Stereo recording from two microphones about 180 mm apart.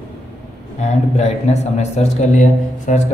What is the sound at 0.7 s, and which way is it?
A man's voice, 40° left (ahead or behind).